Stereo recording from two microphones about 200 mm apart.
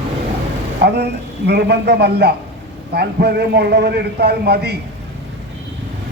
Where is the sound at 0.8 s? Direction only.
55° right (ahead or behind).